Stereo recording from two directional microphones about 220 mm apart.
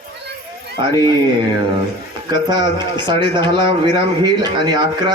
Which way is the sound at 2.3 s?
20° right (ahead or behind).